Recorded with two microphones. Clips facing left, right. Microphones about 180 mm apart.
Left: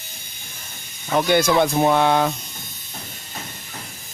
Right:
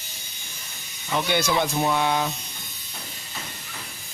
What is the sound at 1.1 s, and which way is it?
Speech, 50° left (ahead or behind).